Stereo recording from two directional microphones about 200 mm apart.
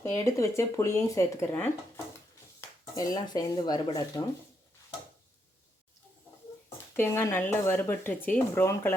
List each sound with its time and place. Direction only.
0.0 s speech: 15° left (ahead or behind)
6.9 s speech: 10° left (ahead or behind)